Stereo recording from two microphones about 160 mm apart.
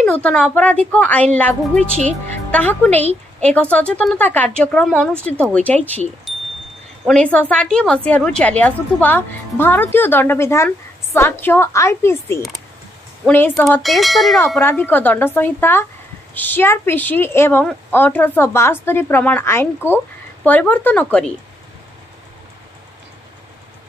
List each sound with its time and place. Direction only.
0.0 s a woman's voice: 5° left (ahead or behind)
6.3 s wind chime: centre (ahead or behind)
7.1 s a woman's voice: 10° left (ahead or behind)
13.8 s bell: centre (ahead or behind)
14.6 s a woman's voice: 15° left (ahead or behind)